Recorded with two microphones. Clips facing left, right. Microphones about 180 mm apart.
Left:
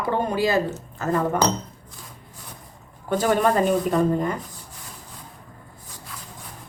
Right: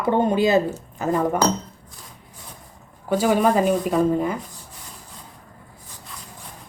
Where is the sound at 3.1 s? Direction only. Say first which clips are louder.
Right 2 dB; 5° right (ahead or behind).